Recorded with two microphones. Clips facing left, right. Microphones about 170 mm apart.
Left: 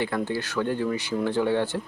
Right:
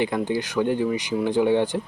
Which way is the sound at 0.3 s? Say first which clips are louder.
Right 4 dB; 15° right (ahead or behind).